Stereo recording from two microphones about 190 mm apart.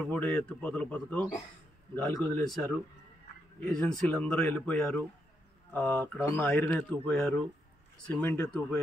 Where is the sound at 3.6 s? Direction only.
5° left (ahead or behind).